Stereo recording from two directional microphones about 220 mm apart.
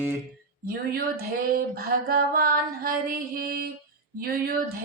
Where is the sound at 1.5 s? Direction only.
45° right (ahead or behind).